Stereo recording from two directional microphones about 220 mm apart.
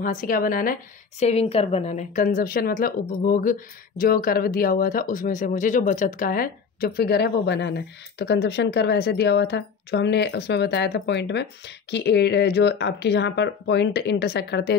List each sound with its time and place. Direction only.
0.0 s a woman's voice: 35° left (ahead or behind)
1.2 s speech: 30° left (ahead or behind); by 14.8 s 50° left (ahead or behind)